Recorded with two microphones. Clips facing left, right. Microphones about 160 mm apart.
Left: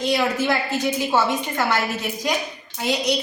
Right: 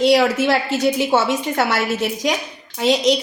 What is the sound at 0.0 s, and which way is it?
A woman's voice, 90° right.